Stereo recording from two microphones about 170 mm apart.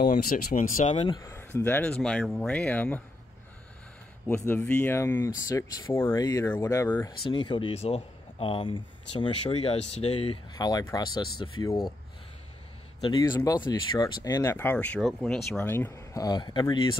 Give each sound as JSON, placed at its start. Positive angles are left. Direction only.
{"t": 0.0, "sound": "speech", "side_deg": 60}
{"t": 1.0, "sound": "speech", "side_deg": 25}
{"t": 1.3, "sound": "speech", "side_deg": 10}
{"t": 4.5, "sound": "speech", "side_deg": 10}
{"t": 7.2, "sound": "speech", "side_deg": 30}
{"t": 10.6, "sound": "speech", "side_deg": 20}
{"t": 13.0, "sound": "speech", "side_deg": 25}